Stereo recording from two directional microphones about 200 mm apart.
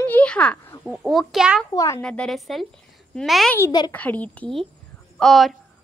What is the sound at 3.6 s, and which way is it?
Speech, 20° left (ahead or behind).